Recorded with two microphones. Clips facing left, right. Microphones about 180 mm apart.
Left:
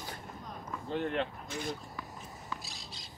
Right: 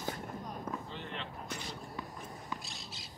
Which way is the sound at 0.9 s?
55° left (ahead or behind).